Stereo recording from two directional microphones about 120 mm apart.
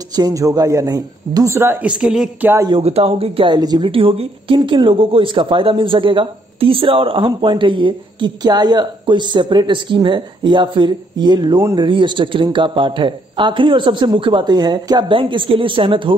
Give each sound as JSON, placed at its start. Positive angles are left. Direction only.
{"t": 0.1, "sound": "a man's voice", "side_deg": -30}
{"t": 1.9, "sound": "speech", "side_deg": -5}
{"t": 2.8, "sound": "speech", "side_deg": -55}
{"t": 3.5, "sound": "a man's voice", "side_deg": -35}
{"t": 4.6, "sound": "a man's voice", "side_deg": -35}